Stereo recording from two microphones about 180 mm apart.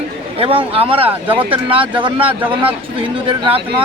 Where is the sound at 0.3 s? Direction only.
30° right (ahead or behind).